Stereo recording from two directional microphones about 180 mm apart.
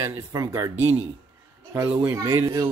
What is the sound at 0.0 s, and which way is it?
Speech, 15° right (ahead or behind).